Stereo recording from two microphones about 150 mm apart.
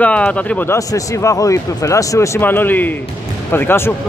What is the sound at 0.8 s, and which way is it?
Speech, 20° left (ahead or behind).